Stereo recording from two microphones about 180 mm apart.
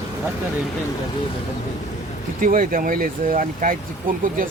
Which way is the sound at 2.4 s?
50° right (ahead or behind).